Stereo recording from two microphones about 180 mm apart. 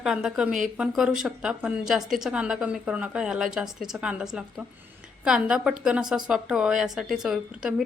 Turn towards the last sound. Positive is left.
turn(degrees=-5)  # may be behind; listen again after turning